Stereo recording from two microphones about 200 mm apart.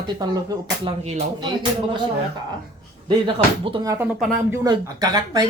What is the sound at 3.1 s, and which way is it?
Speech, 25° right (ahead or behind).